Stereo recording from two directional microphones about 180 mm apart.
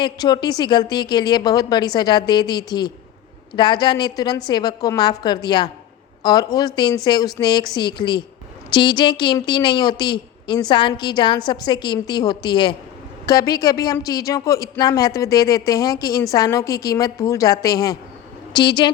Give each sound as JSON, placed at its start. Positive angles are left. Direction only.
{"t": 0.0, "sound": "a woman's voice", "side_deg": 25}